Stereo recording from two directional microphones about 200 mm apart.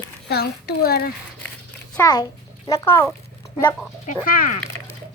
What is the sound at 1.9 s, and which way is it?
A child's voice, 15° left (ahead or behind).